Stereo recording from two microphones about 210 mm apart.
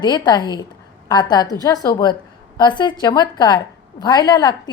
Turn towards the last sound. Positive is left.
turn(degrees=20)  # may be behind; listen again after turning